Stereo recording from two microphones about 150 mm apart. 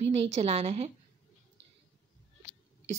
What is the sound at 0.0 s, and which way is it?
Speech, 45° right (ahead or behind).